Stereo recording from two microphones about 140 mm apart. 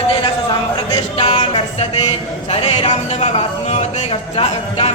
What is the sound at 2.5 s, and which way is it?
A man's voice, 45° left (ahead or behind).